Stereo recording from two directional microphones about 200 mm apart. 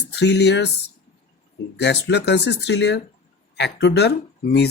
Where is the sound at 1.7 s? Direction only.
55° left (ahead or behind).